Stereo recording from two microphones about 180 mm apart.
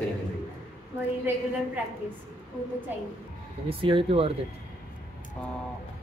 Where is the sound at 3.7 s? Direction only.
30° right (ahead or behind).